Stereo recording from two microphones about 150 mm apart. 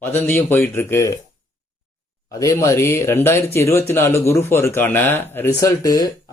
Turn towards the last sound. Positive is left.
turn(degrees=25)  # may be behind; listen again after turning